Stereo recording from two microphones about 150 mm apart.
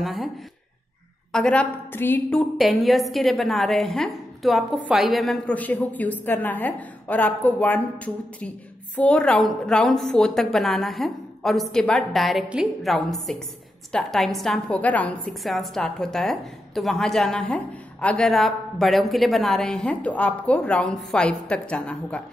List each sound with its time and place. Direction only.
0.0 s a woman's voice: centre (ahead or behind)
1.3 s a woman's voice: 5° left (ahead or behind)
2.5 s a woman's voice: centre (ahead or behind)